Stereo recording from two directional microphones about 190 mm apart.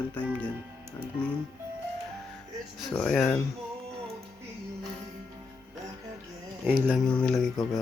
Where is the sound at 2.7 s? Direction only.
Centre (ahead or behind).